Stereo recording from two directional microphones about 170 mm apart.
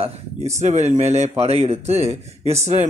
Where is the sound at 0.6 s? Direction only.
40° right (ahead or behind).